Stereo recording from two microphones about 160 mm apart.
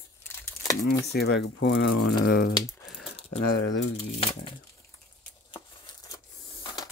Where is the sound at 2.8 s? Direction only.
Centre (ahead or behind).